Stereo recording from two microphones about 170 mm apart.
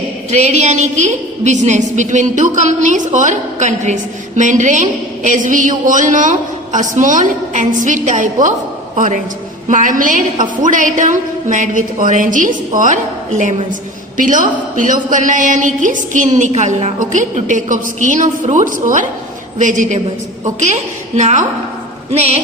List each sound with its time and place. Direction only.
0.3 s a woman's voice: 40° right (ahead or behind)
9.6 s a woman's voice: 50° right (ahead or behind)